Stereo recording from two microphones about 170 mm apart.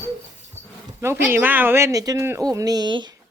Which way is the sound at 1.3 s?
10° right (ahead or behind).